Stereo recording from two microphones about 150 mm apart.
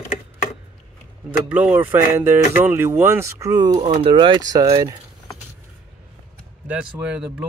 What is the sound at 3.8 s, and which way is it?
Speech, 40° right (ahead or behind).